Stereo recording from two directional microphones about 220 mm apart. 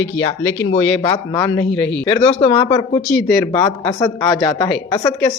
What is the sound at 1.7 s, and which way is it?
Speech, 5° left (ahead or behind).